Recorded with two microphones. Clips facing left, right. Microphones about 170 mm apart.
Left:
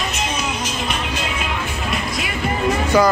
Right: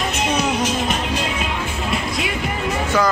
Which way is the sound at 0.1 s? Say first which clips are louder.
Right 4 dB; 65° right (ahead or behind).